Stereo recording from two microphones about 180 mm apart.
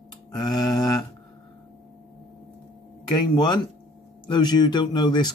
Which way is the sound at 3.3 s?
25° left (ahead or behind).